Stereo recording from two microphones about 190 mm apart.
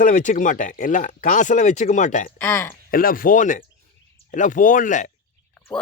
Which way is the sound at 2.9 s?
50° left (ahead or behind).